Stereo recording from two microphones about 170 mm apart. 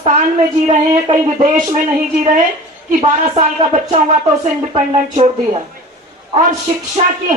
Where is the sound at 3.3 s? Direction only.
40° right (ahead or behind).